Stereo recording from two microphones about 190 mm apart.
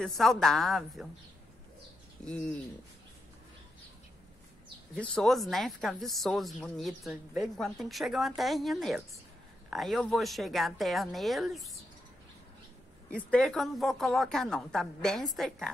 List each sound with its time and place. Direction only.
0.0 s a woman's voice: centre (ahead or behind)
2.2 s a woman's voice: 5° left (ahead or behind)
4.9 s a woman's voice: 5° left (ahead or behind)
13.1 s a woman's voice: 5° left (ahead or behind)